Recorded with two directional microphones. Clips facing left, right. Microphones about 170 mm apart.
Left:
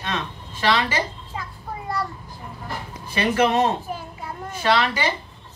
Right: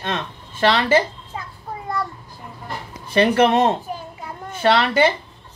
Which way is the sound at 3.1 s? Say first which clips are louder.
Right 5 dB; 55° right (ahead or behind).